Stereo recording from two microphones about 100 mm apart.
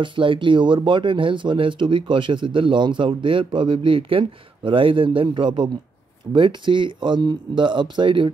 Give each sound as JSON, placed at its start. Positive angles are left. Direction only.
{"t": 0.0, "sound": "speech", "side_deg": -55}